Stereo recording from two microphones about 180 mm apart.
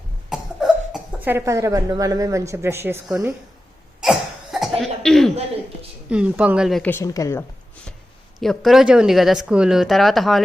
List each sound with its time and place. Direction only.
0.3 s speech: 5° right (ahead or behind)
4.0 s cough: centre (ahead or behind)
6.1 s speech: 5° right (ahead or behind)
6.9 s speech: 20° left (ahead or behind)
8.4 s speech: centre (ahead or behind)